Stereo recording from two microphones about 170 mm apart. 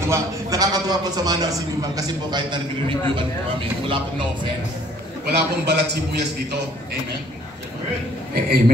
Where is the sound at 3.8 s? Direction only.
30° right (ahead or behind).